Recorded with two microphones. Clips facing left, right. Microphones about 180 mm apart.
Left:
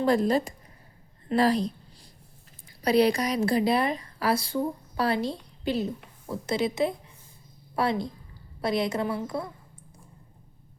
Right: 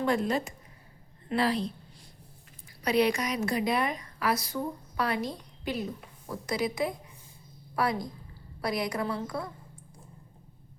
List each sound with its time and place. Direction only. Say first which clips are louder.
0.0 s a woman's voice: left 5 dB; 35° left (ahead or behind)
2.8 s a woman's voice: left 4 dB; 35° left (ahead or behind)